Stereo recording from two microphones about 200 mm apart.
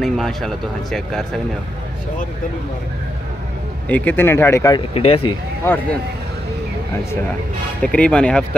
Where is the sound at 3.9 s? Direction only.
10° left (ahead or behind).